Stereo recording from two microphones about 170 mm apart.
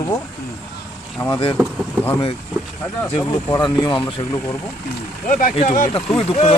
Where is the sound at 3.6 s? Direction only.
25° left (ahead or behind).